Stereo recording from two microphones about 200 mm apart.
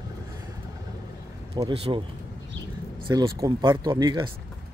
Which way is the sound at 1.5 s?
20° right (ahead or behind).